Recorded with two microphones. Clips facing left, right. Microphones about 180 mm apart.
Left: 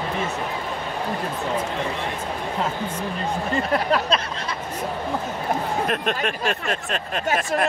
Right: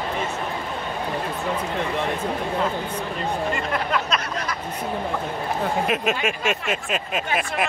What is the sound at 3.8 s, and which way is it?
Speech, 35° left (ahead or behind).